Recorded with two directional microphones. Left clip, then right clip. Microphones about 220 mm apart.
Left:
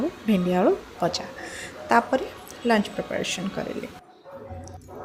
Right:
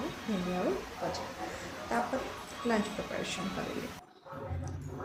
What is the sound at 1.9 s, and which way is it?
Speech, 40° left (ahead or behind).